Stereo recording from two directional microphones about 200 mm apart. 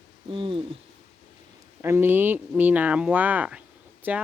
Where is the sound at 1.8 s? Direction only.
10° right (ahead or behind).